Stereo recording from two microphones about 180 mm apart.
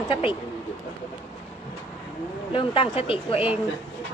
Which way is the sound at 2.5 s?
30° left (ahead or behind).